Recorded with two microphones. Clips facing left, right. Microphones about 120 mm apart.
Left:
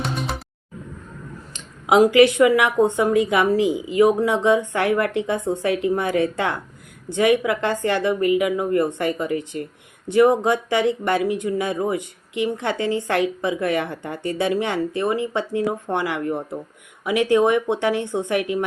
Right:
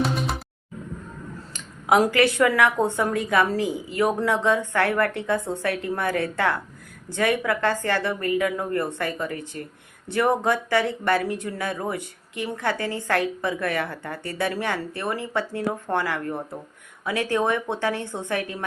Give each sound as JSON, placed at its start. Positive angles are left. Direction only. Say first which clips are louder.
{"t": 0.0, "sound": "music", "louder": "right 2 dB", "side_deg": 0}
{"t": 1.5, "sound": "speech", "louder": "left 4 dB", "side_deg": 20}